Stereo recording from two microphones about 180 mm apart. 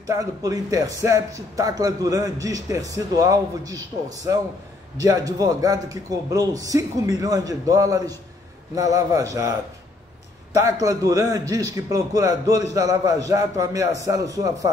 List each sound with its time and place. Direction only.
0.0 s a man's voice: 20° right (ahead or behind)
10.5 s a man's voice: 20° right (ahead or behind)